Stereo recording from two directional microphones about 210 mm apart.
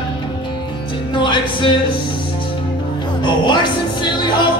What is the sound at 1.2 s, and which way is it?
Music, 25° left (ahead or behind).